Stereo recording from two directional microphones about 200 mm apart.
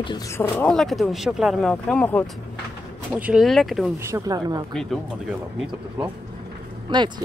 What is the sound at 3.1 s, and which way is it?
Speech, 5° right (ahead or behind).